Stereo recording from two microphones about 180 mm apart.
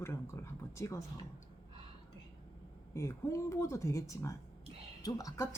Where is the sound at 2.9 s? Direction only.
15° left (ahead or behind).